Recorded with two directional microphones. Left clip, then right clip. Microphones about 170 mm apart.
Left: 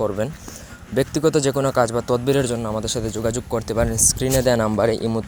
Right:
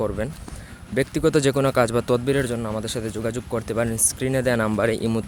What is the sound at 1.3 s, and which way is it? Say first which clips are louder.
Speech: even; 15° right (ahead or behind).